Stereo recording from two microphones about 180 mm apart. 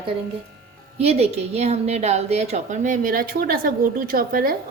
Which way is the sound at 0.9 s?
35° right (ahead or behind).